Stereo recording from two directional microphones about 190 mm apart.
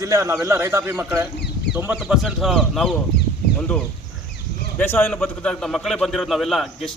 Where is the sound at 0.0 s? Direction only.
15° right (ahead or behind).